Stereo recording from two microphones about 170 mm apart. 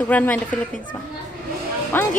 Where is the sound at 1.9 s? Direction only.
10° left (ahead or behind).